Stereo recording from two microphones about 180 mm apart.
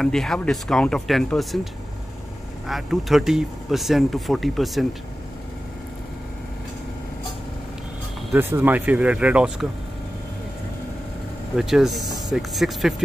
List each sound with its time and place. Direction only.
0.0 s speech: 5° left (ahead or behind)
8.3 s speech: 10° right (ahead or behind)
11.5 s speech: centre (ahead or behind)